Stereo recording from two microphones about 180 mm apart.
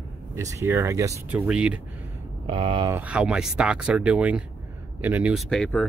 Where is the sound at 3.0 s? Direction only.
5° right (ahead or behind).